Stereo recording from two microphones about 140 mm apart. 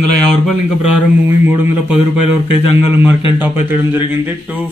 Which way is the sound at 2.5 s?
40° left (ahead or behind).